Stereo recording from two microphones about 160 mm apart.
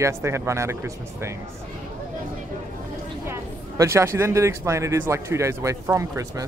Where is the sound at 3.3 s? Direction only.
15° right (ahead or behind).